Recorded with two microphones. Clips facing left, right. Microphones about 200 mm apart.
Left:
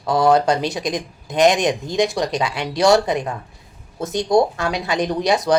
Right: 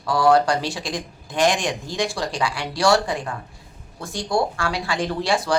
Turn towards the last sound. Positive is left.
turn(degrees=20)  # may be behind; listen again after turning